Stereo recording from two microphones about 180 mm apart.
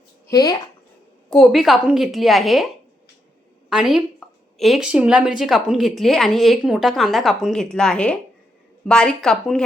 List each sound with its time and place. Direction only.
0.3 s speech: 20° left (ahead or behind)
1.3 s a woman's voice: centre (ahead or behind)
3.7 s a woman's voice: 5° right (ahead or behind)
4.2 s a sound: centre (ahead or behind)
4.5 s a woman's voice: centre (ahead or behind)